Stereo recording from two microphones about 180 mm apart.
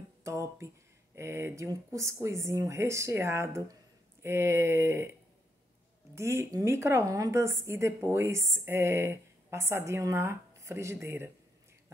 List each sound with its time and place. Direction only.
0.2 s a woman's voice: 15° right (ahead or behind)
6.5 s a woman's voice: 15° right (ahead or behind)